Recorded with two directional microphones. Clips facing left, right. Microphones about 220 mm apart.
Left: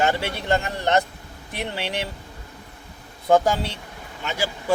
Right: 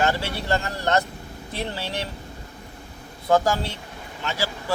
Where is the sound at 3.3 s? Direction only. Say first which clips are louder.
Left 2 dB; 15° left (ahead or behind).